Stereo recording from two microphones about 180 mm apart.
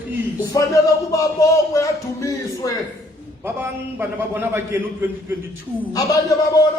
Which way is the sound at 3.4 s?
10° right (ahead or behind).